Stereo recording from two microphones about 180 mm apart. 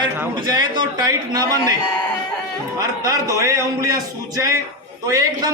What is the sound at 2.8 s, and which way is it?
A man's voice, 20° right (ahead or behind).